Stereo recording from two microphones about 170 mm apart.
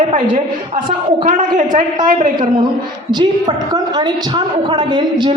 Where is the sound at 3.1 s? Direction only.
25° right (ahead or behind).